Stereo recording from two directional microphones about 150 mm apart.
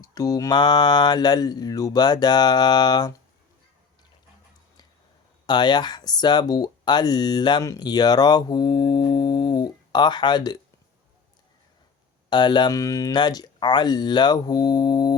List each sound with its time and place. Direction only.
0.0 s speech: 25° left (ahead or behind)
5.5 s speech: 30° left (ahead or behind)
12.3 s speech: 30° left (ahead or behind)